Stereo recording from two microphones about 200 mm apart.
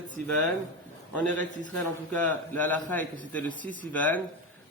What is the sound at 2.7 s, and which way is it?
A man's voice, 10° left (ahead or behind).